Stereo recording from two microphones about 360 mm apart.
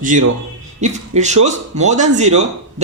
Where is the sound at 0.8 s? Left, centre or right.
Centre.